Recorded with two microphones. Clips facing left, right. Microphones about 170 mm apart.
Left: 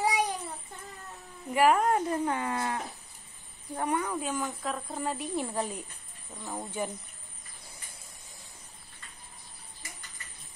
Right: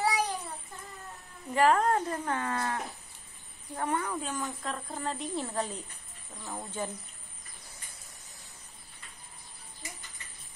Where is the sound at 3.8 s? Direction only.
15° left (ahead or behind).